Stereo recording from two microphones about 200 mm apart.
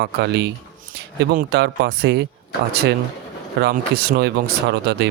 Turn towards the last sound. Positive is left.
turn(degrees=-60)  # may be behind; listen again after turning